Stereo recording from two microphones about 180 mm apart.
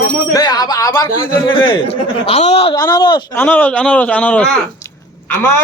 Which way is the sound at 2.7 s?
20° left (ahead or behind).